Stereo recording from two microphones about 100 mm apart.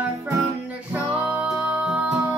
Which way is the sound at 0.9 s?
10° right (ahead or behind).